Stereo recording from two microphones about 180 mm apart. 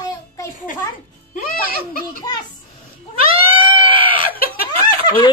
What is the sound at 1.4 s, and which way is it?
Speech, 55° left (ahead or behind).